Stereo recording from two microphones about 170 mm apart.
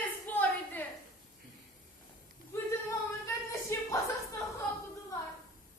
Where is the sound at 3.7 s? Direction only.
15° left (ahead or behind).